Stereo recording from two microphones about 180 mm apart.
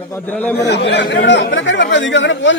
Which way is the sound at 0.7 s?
70° left (ahead or behind).